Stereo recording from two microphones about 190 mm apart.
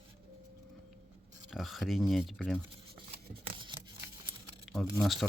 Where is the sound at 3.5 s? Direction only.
25° right (ahead or behind).